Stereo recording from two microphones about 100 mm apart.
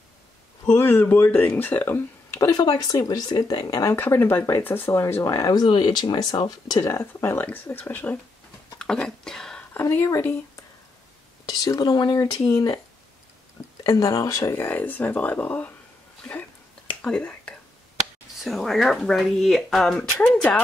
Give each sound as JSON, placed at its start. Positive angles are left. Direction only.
{"t": 0.7, "sound": "speech", "side_deg": 20}
{"t": 2.4, "sound": "speech", "side_deg": 35}
{"t": 3.9, "sound": "speech", "side_deg": 20}
{"t": 6.8, "sound": "speech", "side_deg": 30}
{"t": 8.7, "sound": "whispering", "side_deg": 10}
{"t": 9.8, "sound": "speech", "side_deg": 25}
{"t": 11.4, "sound": "speech", "side_deg": 40}
{"t": 13.8, "sound": "speech", "side_deg": 35}
{"t": 14.6, "sound": "speech", "side_deg": 15}
{"t": 17.0, "sound": "speech", "side_deg": 10}